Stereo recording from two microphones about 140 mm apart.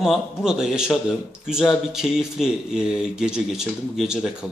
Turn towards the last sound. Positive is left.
turn(degrees=-5)  # may be behind; listen again after turning